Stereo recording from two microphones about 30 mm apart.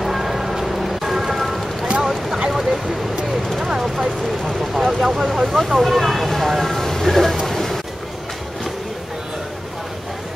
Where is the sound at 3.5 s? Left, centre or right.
Centre.